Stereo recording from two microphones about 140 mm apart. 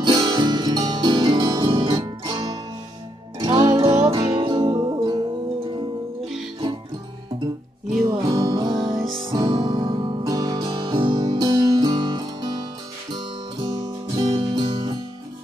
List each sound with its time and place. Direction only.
0.0 s music: 30° right (ahead or behind); by 4.2 s 45° right (ahead or behind)
4.3 s music: 35° right (ahead or behind)
8.1 s music: 30° right (ahead or behind)
10.8 s music: 35° right (ahead or behind)